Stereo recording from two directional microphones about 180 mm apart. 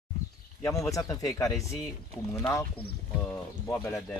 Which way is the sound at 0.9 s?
20° left (ahead or behind).